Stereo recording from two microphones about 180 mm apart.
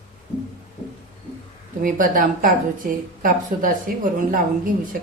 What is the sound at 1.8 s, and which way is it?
A woman's voice, 50° right (ahead or behind).